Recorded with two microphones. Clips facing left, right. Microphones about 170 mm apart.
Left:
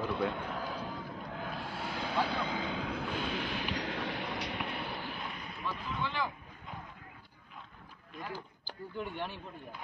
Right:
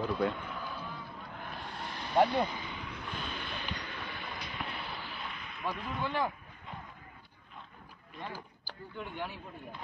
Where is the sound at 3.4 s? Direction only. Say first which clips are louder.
Left 5 dB; 90° left; by 4.8 s 65° left (ahead or behind).